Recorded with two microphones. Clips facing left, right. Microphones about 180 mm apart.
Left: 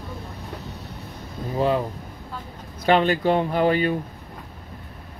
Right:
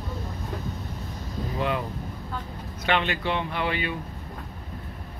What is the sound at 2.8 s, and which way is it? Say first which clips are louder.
Speech: left 7 dB; 40° left (ahead or behind).